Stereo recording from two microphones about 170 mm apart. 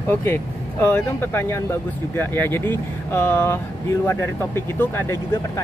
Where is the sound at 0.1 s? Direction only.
15° left (ahead or behind).